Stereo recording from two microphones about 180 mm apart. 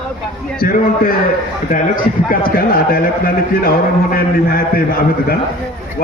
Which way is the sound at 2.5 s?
55° left (ahead or behind).